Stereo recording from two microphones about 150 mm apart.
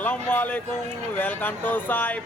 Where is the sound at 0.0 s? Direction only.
10° left (ahead or behind).